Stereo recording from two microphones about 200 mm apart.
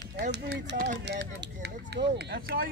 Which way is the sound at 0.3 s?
60° right (ahead or behind).